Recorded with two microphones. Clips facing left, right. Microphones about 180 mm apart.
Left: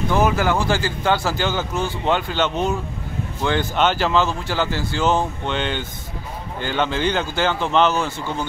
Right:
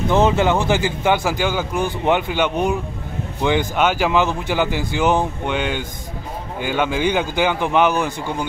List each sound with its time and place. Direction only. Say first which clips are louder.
0.1 s a man's voice: right 3 dB; 25° right (ahead or behind)